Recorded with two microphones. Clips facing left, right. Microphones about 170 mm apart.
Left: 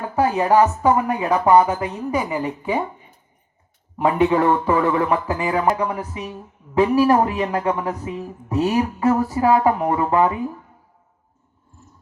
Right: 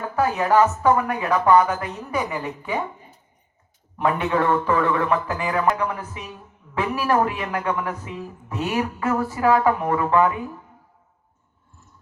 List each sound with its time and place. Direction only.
0.3 s speech: 15° left (ahead or behind)
1.8 s speech: 30° left (ahead or behind)
2.3 s speech: 15° left (ahead or behind)
4.3 s speech: 15° left (ahead or behind)
6.0 s a man's voice: 35° left (ahead or behind)
9.4 s speech: 15° left (ahead or behind)